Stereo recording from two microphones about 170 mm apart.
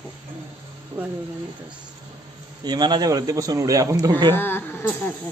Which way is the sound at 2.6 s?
25° right (ahead or behind).